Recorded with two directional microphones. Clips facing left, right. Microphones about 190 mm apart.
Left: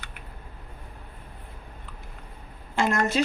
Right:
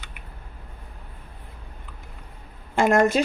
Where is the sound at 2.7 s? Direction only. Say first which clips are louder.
Right 6 dB; 50° right (ahead or behind).